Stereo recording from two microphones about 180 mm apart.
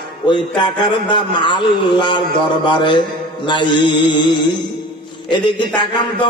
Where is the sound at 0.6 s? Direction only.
25° left (ahead or behind).